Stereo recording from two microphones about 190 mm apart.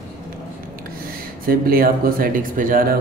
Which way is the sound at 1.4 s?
50° right (ahead or behind).